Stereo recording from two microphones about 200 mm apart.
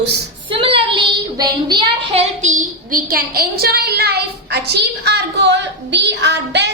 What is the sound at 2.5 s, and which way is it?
A woman's voice, 40° right (ahead or behind).